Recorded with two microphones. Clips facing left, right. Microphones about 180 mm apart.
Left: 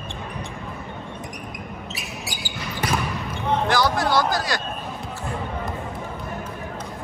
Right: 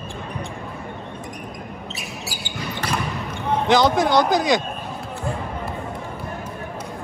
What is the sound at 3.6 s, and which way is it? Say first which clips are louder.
Speech: right 7 dB; 20° right (ahead or behind).